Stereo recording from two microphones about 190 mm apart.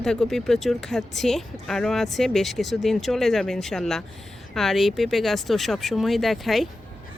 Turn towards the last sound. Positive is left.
turn(degrees=0)  # may be behind; listen again after turning